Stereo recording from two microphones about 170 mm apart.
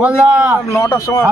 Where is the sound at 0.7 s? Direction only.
15° left (ahead or behind).